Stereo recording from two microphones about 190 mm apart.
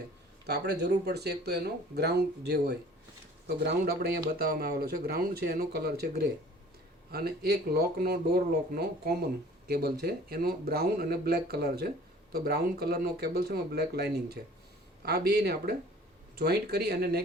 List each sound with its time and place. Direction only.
0.4 s speech: 60° right (ahead or behind)